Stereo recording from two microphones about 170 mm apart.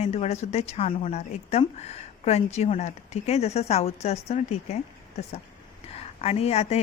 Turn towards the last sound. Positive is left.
turn(degrees=40)  # may be behind; listen again after turning